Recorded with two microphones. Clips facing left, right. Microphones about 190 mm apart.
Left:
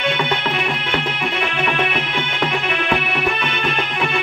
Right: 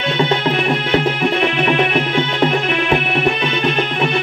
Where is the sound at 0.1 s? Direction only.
30° right (ahead or behind).